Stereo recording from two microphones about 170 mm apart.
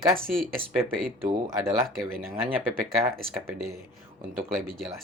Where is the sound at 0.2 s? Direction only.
Centre (ahead or behind).